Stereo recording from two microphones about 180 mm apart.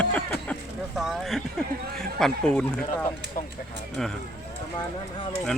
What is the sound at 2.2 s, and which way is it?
Speech, 5° left (ahead or behind).